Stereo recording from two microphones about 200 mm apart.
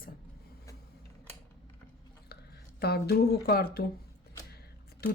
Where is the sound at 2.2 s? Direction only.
55° left (ahead or behind).